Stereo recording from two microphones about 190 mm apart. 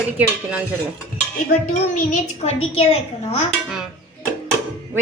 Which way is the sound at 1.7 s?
35° left (ahead or behind).